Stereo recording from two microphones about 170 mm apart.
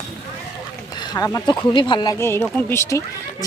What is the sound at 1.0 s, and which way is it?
Speech, 20° left (ahead or behind).